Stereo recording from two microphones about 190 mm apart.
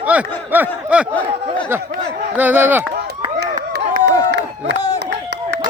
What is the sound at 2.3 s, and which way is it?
Speech, 10° right (ahead or behind).